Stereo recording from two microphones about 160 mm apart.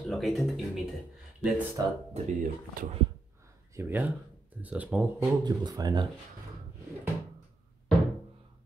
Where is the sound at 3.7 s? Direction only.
15° right (ahead or behind).